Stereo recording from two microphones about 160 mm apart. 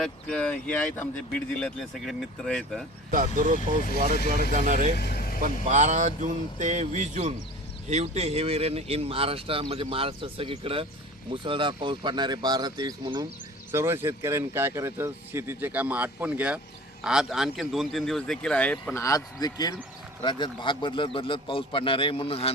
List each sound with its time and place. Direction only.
0.0 s speech: 5° left (ahead or behind)
3.1 s speech: 55° right (ahead or behind)
4.9 s vehicle: 75° left (ahead or behind)
5.4 s speech: 50° right (ahead or behind); by 13.2 s 25° right (ahead or behind)
13.7 s speech: 15° right (ahead or behind); by 19.0 s 10° left (ahead or behind)
19.0 s a man's voice: 20° left (ahead or behind); by 22.5 s 40° left (ahead or behind)